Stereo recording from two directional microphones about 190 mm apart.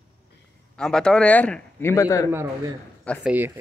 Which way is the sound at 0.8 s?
5° left (ahead or behind).